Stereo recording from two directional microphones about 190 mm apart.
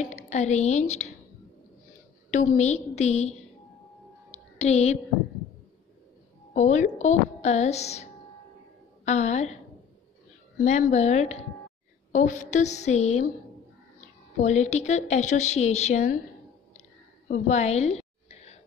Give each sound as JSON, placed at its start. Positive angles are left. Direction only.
{"t": 0.0, "sound": "a woman's voice", "side_deg": 40}
{"t": 2.3, "sound": "speech", "side_deg": 40}
{"t": 4.3, "sound": "a sound", "side_deg": 35}
{"t": 6.5, "sound": "speech", "side_deg": 40}
{"t": 10.6, "sound": "speech", "side_deg": 35}
{"t": 14.4, "sound": "speech", "side_deg": 35}
{"t": 17.3, "sound": "speech", "side_deg": 35}